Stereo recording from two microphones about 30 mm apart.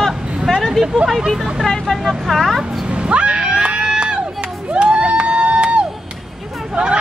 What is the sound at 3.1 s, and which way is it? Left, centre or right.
Screaming, right.